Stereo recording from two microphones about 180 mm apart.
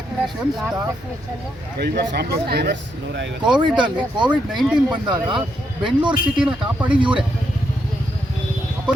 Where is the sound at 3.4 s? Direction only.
25° right (ahead or behind).